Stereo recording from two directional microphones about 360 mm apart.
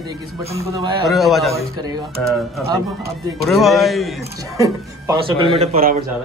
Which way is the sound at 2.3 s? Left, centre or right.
Centre.